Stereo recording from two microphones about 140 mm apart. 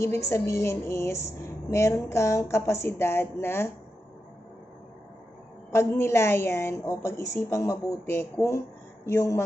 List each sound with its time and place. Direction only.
0.0 s a woman's voice: 20° left (ahead or behind)
5.7 s a woman's voice: 20° left (ahead or behind)